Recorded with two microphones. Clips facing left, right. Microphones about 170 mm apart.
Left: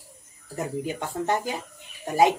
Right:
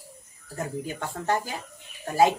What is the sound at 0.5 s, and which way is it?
Speech, 20° left (ahead or behind).